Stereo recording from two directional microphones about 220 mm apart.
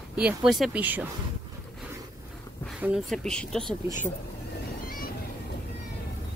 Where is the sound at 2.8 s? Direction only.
Centre (ahead or behind).